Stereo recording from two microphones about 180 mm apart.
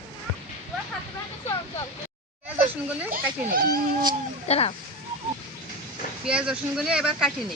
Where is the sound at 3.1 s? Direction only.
55° right (ahead or behind).